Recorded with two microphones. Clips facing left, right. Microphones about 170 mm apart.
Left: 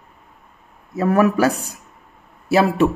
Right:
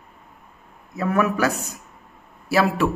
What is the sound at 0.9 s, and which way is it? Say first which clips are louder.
Speech: left 5 dB; 35° left (ahead or behind).